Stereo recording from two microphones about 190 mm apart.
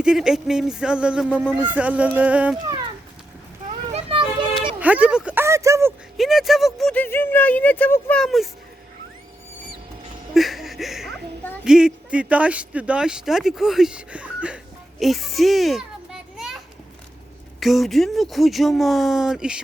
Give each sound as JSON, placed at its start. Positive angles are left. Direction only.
{"t": 0.0, "sound": "speech", "side_deg": -5}
{"t": 3.7, "sound": "children playing", "side_deg": -30}
{"t": 4.8, "sound": "a sound", "side_deg": -5}
{"t": 6.1, "sound": "speech", "side_deg": 0}
{"t": 10.3, "sound": "speech", "side_deg": 0}
{"t": 17.6, "sound": "speech", "side_deg": 0}